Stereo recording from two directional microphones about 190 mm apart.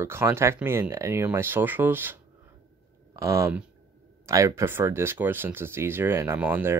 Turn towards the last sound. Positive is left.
turn(degrees=-10)  # may be behind; listen again after turning